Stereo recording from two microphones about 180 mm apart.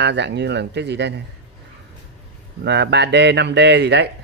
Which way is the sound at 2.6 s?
75° right (ahead or behind).